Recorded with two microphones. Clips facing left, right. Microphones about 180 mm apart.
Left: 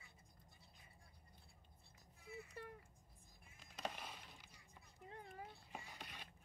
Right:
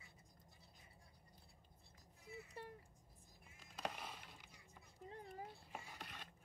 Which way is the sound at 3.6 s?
5° right (ahead or behind).